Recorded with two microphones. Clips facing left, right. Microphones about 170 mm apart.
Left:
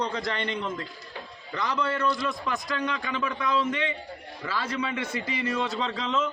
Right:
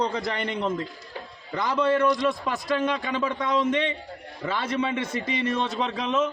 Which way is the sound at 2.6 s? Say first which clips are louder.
Right 5 dB; 25° right (ahead or behind).